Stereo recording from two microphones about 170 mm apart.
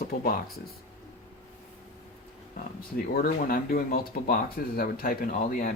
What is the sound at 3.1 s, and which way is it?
Speech, 60° left (ahead or behind).